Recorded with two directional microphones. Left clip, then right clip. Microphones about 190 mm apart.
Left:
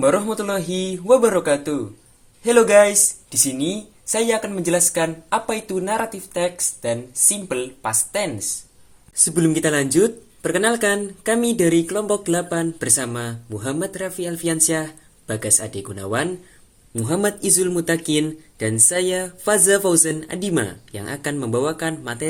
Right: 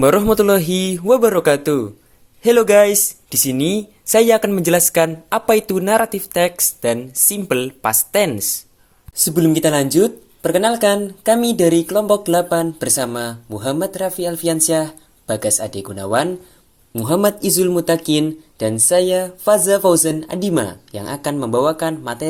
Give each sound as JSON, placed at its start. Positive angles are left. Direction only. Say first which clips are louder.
{"t": 0.0, "sound": "speech", "louder": "right 6 dB", "side_deg": -45}
{"t": 9.1, "sound": "speech", "louder": "right 4 dB", "side_deg": -15}